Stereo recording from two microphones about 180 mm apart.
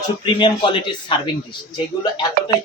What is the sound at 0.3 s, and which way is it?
Speech, 25° left (ahead or behind).